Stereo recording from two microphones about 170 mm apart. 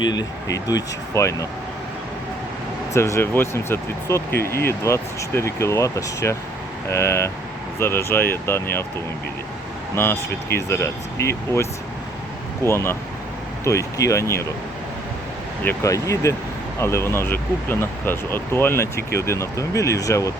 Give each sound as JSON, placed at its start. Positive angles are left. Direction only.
{"t": 0.0, "sound": "speech", "side_deg": 25}
{"t": 2.9, "sound": "speech", "side_deg": 15}
{"t": 9.9, "sound": "speech", "side_deg": 15}
{"t": 15.6, "sound": "speech", "side_deg": 20}